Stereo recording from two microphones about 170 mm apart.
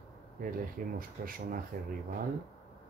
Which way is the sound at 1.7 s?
70° right (ahead or behind).